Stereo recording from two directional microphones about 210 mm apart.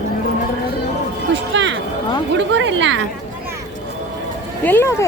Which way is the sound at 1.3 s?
60° right (ahead or behind).